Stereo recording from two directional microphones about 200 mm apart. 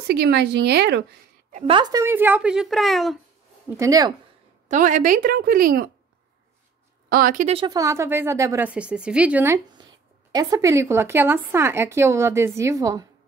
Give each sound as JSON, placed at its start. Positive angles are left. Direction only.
{"t": 0.1, "sound": "a woman's voice", "side_deg": -55}
{"t": 1.5, "sound": "a woman's voice", "side_deg": -30}
{"t": 3.6, "sound": "a woman's voice", "side_deg": -15}
{"t": 4.6, "sound": "a woman's voice", "side_deg": -40}
{"t": 7.1, "sound": "a woman's voice", "side_deg": -45}
{"t": 7.5, "sound": "a woman's voice", "side_deg": -20}